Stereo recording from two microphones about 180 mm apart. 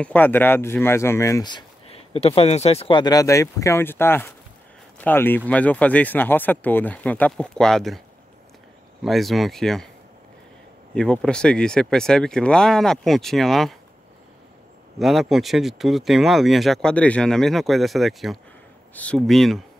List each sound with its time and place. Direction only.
0.0 s speech: 10° left (ahead or behind)
9.0 s speech: centre (ahead or behind)
11.0 s speech: 5° left (ahead or behind)
15.0 s speech: centre (ahead or behind)